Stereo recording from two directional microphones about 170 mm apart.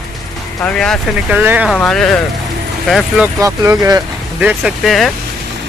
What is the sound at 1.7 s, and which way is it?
Speech, centre (ahead or behind).